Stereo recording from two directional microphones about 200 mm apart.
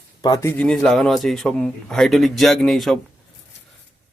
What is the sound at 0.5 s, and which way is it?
A man's voice, 5° left (ahead or behind).